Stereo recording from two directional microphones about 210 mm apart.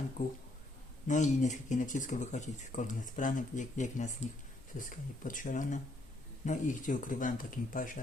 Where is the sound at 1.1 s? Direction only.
35° left (ahead or behind).